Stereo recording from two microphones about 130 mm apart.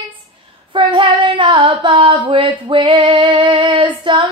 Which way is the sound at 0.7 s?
35° right (ahead or behind).